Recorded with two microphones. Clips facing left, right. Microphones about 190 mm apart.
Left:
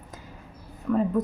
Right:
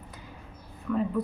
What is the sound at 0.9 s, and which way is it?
Speech, 40° left (ahead or behind).